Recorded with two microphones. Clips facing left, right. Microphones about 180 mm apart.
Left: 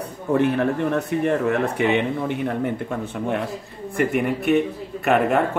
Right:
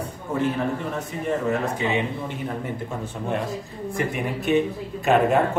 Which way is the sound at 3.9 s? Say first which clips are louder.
Left 6 dB; 60° left (ahead or behind).